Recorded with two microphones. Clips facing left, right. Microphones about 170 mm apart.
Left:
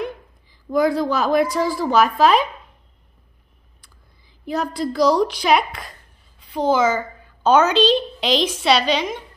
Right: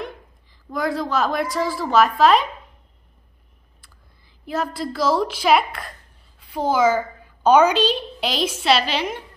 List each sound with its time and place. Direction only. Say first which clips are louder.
0.0 s a woman's voice: left 5 dB; centre (ahead or behind)
3.8 s a woman's voice: even; centre (ahead or behind)